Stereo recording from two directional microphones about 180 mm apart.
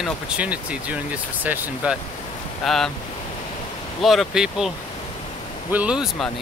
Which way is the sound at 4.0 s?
Centre (ahead or behind).